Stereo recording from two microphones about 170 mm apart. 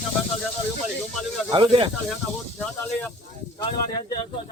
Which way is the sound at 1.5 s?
30° right (ahead or behind).